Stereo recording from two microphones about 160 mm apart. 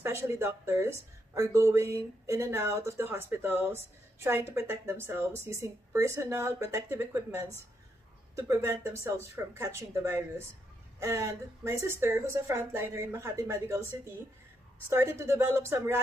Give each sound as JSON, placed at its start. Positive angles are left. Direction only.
{"t": 0.0, "sound": "speech", "side_deg": -15}